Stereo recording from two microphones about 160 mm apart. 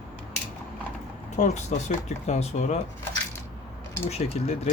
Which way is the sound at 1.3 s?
45° left (ahead or behind).